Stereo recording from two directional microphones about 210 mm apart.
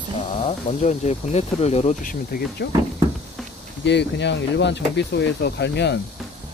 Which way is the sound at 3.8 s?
55° left (ahead or behind).